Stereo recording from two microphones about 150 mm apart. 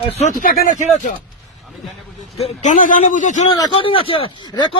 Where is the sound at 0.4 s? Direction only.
75° left (ahead or behind).